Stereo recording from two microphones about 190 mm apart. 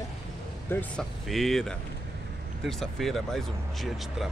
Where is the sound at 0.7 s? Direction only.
5° left (ahead or behind).